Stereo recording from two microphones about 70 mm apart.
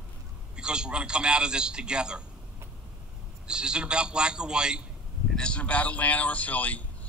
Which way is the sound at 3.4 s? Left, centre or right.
Centre.